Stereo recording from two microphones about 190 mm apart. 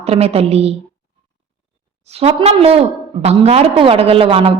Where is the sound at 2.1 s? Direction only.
30° right (ahead or behind).